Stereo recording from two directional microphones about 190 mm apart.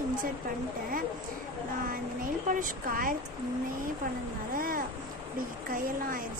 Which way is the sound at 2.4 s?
45° right (ahead or behind).